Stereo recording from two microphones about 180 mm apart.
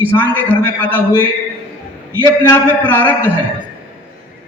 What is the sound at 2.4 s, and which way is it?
Speech, 10° left (ahead or behind).